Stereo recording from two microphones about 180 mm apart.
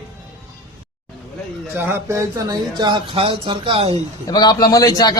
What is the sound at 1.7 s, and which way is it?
Speech, 15° right (ahead or behind).